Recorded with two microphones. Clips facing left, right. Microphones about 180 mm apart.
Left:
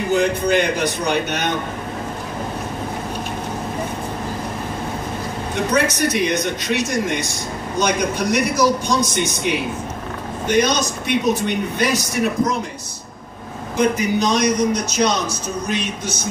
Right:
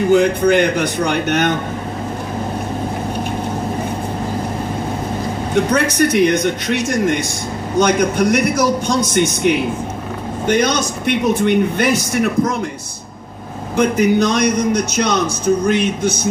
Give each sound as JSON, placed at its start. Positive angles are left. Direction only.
{"t": 0.1, "sound": "a man's voice", "side_deg": -55}
{"t": 5.7, "sound": "a man's voice", "side_deg": -55}
{"t": 13.7, "sound": "a man's voice", "side_deg": -55}